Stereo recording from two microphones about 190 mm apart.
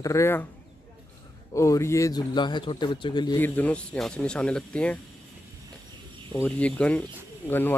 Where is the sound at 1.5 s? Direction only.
15° left (ahead or behind).